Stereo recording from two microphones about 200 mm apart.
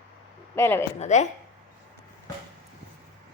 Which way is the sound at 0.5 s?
10° left (ahead or behind).